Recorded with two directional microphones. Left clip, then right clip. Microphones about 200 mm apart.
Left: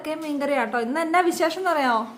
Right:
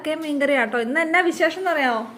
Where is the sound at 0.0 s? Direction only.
5° right (ahead or behind).